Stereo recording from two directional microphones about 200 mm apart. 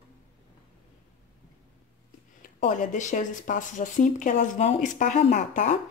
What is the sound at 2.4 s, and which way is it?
Speech, 40° left (ahead or behind).